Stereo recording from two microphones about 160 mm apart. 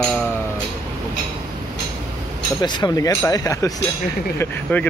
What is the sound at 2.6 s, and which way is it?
Speech, 25° left (ahead or behind).